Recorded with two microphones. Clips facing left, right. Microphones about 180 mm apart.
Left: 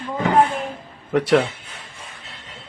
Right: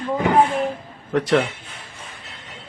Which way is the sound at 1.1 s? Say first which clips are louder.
Left 2 dB; centre (ahead or behind).